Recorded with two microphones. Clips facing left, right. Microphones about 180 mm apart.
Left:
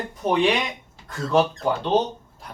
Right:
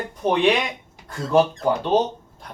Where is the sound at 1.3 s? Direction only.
15° right (ahead or behind).